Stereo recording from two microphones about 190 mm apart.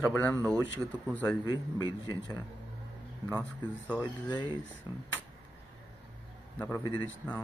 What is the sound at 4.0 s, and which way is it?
Speech, 25° left (ahead or behind).